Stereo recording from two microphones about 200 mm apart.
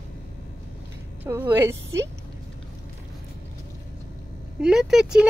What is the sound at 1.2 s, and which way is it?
Speech, 10° right (ahead or behind).